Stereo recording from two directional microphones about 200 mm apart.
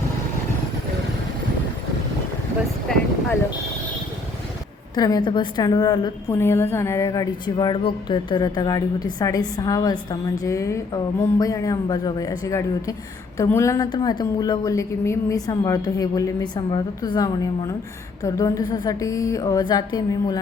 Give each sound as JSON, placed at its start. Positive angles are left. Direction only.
{"t": 4.9, "sound": "a woman's voice", "side_deg": 20}